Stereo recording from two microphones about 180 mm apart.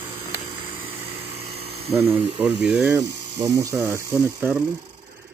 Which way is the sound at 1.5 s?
35° right (ahead or behind).